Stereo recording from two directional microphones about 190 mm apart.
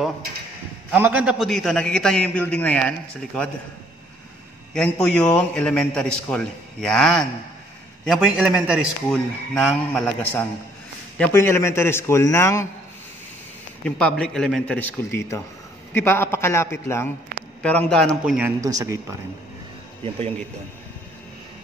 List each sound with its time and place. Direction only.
0.9 s a man's voice: 10° right (ahead or behind); by 2.9 s 5° left (ahead or behind)
4.7 s a man's voice: 5° left (ahead or behind)
13.8 s a man's voice: 5° left (ahead or behind)
18.6 s speech: 20° right (ahead or behind)